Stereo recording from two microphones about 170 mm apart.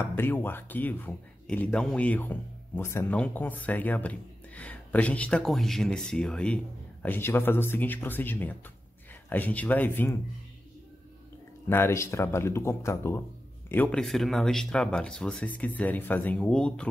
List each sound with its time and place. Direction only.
0.0 s speech: 10° left (ahead or behind)
11.7 s speech: 15° left (ahead or behind)